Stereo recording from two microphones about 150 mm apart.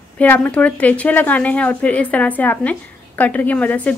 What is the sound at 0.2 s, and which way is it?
Speech, 10° left (ahead or behind).